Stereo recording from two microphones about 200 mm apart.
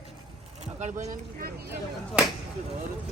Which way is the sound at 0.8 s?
35° right (ahead or behind).